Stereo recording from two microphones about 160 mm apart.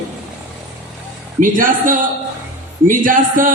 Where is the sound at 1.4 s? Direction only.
55° right (ahead or behind).